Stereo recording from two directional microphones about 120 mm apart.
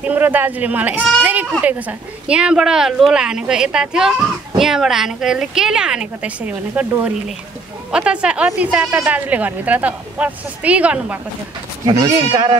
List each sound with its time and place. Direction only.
0.0 s speech: 15° right (ahead or behind)
1.2 s bleat: 15° right (ahead or behind)
1.6 s a woman's voice: 15° right (ahead or behind)
11.8 s speech: 30° right (ahead or behind)